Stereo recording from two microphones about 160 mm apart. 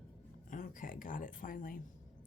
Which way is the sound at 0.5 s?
55° left (ahead or behind).